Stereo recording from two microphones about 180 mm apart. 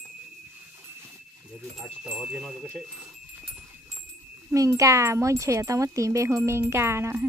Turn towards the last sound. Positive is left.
turn(degrees=-15)  # may be behind; listen again after turning